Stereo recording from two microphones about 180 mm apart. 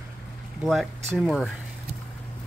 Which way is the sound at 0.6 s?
Centre (ahead or behind).